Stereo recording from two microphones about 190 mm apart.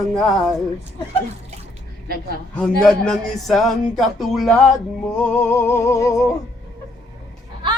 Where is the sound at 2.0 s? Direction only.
50° right (ahead or behind).